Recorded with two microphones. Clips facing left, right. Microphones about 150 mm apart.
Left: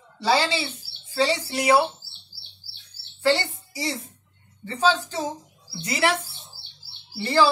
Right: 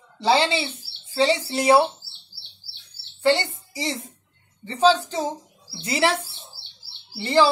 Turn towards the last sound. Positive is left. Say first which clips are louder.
# right 2 dB
turn(degrees=-20)  # may be behind; listen again after turning